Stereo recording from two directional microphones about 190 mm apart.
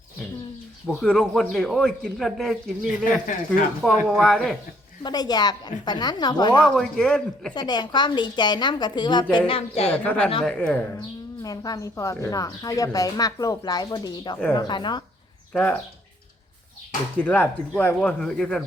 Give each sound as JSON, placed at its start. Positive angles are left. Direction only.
{"t": 0.9, "sound": "a man's voice", "side_deg": 0}
{"t": 3.0, "sound": "speech", "side_deg": 45}
{"t": 3.8, "sound": "a man's voice", "side_deg": 0}
{"t": 5.0, "sound": "speech", "side_deg": 20}
{"t": 6.7, "sound": "a man's voice", "side_deg": 0}
{"t": 7.5, "sound": "a woman's voice", "side_deg": 20}
{"t": 9.9, "sound": "speech", "side_deg": 10}
{"t": 11.4, "sound": "speech", "side_deg": 20}
{"t": 17.2, "sound": "speech", "side_deg": 10}